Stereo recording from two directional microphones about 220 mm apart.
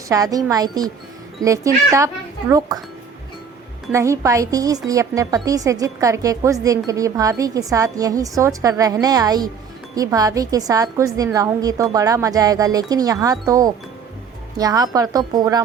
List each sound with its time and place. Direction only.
0.1 s a woman's voice: 15° right (ahead or behind)
3.9 s a woman's voice: 15° right (ahead or behind)